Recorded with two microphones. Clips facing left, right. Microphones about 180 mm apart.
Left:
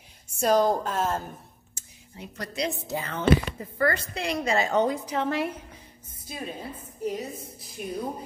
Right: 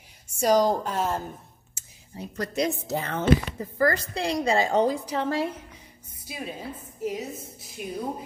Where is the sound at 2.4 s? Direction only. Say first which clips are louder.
Right 4 dB; 45° right (ahead or behind).